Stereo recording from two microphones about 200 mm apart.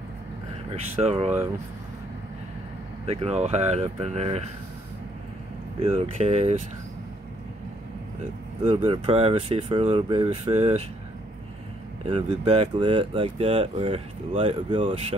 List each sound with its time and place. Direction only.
1.0 s speech: 30° right (ahead or behind)
3.1 s speech: 30° right (ahead or behind)
5.8 s speech: 30° right (ahead or behind)
8.6 s speech: 25° right (ahead or behind)
12.1 s speech: 30° right (ahead or behind)